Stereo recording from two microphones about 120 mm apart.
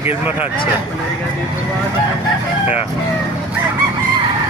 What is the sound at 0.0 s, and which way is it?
Speech, 15° right (ahead or behind).